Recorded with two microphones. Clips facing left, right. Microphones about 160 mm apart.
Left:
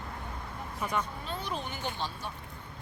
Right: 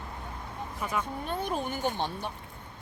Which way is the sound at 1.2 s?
50° right (ahead or behind).